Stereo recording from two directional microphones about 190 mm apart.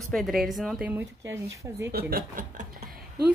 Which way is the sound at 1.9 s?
50° right (ahead or behind).